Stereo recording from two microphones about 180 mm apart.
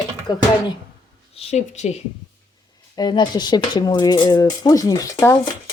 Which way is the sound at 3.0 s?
20° left (ahead or behind).